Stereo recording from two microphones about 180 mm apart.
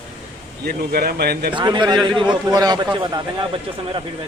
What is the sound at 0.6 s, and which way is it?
Speech, 55° right (ahead or behind).